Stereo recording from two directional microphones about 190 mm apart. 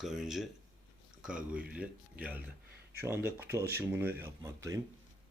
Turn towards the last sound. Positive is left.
turn(degrees=-15)  # may be behind; listen again after turning